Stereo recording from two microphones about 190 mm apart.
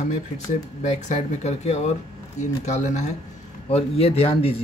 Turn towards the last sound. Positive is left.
turn(degrees=30)  # may be behind; listen again after turning